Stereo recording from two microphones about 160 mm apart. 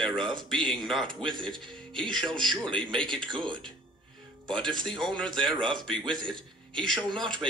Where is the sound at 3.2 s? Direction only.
30° right (ahead or behind).